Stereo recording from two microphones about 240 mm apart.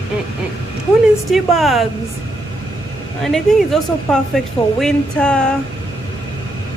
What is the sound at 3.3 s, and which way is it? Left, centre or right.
A woman's voice, centre.